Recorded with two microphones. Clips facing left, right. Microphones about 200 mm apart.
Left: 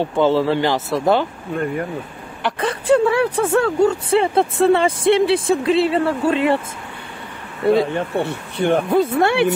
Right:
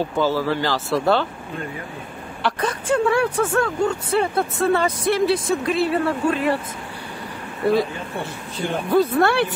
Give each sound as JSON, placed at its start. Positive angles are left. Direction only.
{"t": 0.0, "sound": "speech", "side_deg": 25}
{"t": 2.6, "sound": "speech", "side_deg": 30}
{"t": 7.9, "sound": "speech", "side_deg": 65}
{"t": 8.9, "sound": "speech", "side_deg": 25}